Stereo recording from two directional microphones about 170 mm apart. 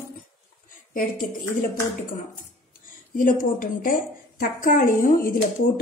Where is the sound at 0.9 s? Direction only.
55° left (ahead or behind).